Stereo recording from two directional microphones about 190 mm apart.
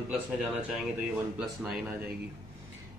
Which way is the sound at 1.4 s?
5° right (ahead or behind).